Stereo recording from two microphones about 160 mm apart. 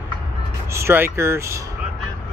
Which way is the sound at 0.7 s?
15° right (ahead or behind).